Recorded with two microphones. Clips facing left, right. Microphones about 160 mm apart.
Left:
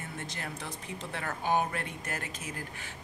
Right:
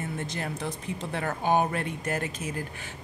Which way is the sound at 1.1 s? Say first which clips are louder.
Right 5 dB; 30° right (ahead or behind).